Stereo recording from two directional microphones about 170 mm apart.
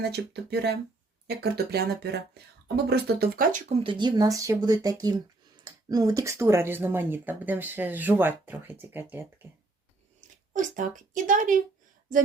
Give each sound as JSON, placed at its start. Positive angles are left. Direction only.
{"t": 0.0, "sound": "speech", "side_deg": -75}
{"t": 3.7, "sound": "speech", "side_deg": -30}
{"t": 10.2, "sound": "speech", "side_deg": -50}